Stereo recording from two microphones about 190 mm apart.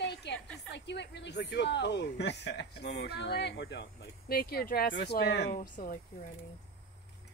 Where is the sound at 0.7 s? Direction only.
65° left (ahead or behind).